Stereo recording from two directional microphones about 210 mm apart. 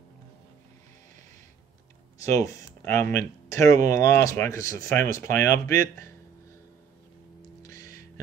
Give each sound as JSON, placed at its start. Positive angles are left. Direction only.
{"t": 2.1, "sound": "speech", "side_deg": 15}
{"t": 7.6, "sound": "music", "side_deg": 15}